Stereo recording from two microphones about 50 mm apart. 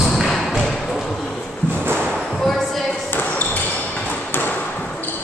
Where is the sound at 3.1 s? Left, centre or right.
Left.